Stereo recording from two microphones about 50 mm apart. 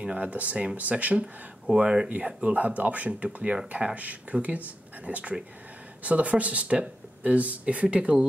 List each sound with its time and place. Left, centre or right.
0.0 s speech: right
1.2 s speech: centre
2.0 s speech: right